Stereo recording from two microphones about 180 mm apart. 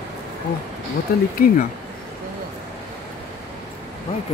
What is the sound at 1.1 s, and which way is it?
Speech, 60° left (ahead or behind).